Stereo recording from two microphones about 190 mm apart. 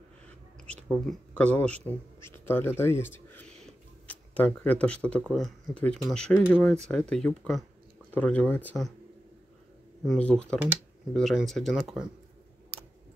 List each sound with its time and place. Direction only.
1.4 s speech: 5° left (ahead or behind)
2.8 s tick-tock: 10° left (ahead or behind)
5.2 s speech: centre (ahead or behind)
10.0 s speech: 5° left (ahead or behind)